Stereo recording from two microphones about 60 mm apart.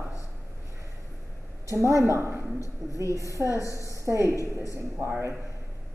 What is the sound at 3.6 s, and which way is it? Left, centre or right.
Speech, left.